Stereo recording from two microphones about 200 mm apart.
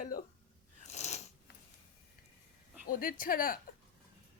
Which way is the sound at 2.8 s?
45° left (ahead or behind).